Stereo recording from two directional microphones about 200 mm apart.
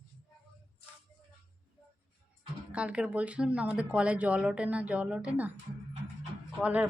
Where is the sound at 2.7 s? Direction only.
5° right (ahead or behind).